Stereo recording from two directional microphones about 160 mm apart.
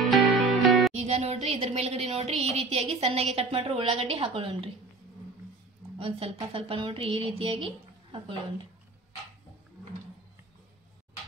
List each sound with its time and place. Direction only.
0.0 s music: centre (ahead or behind)
0.9 s speech: 40° right (ahead or behind)
5.9 s speech: 35° right (ahead or behind)